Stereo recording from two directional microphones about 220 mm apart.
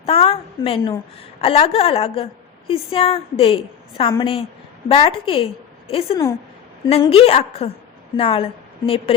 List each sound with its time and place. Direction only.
0.0 s a woman's voice: 25° left (ahead or behind)